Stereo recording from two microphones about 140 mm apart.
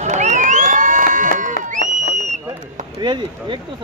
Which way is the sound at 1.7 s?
65° right (ahead or behind).